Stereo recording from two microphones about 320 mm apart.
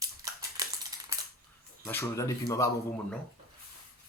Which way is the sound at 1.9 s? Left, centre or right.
Centre.